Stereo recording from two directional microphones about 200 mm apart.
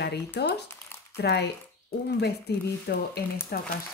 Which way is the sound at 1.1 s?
55° left (ahead or behind).